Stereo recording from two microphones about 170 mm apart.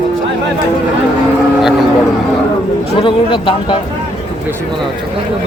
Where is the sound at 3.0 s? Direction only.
30° left (ahead or behind).